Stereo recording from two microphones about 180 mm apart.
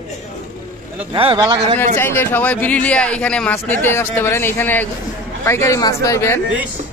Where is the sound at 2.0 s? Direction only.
15° left (ahead or behind).